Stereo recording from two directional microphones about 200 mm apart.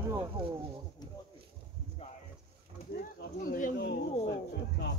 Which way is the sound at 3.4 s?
45° left (ahead or behind).